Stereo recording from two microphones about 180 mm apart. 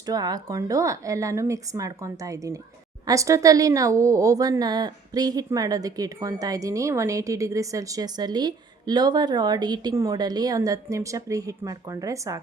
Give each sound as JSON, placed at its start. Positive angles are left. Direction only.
{"t": 0.0, "sound": "a woman's voice", "side_deg": -20}